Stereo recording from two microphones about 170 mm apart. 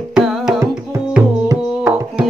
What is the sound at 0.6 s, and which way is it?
Music, 15° right (ahead or behind).